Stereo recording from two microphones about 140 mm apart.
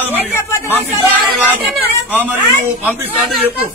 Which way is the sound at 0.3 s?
20° left (ahead or behind).